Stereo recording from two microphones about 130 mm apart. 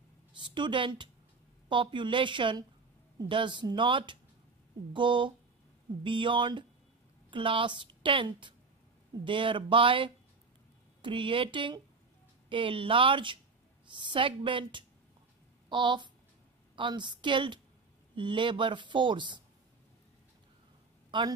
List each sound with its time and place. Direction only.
0.4 s a woman's voice: 40° right (ahead or behind)
21.1 s a woman's voice: 40° right (ahead or behind)